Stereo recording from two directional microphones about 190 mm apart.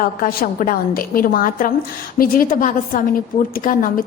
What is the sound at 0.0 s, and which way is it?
A woman's voice, 50° left (ahead or behind).